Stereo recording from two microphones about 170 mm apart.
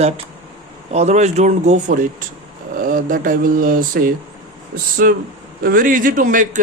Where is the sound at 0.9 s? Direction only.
40° right (ahead or behind).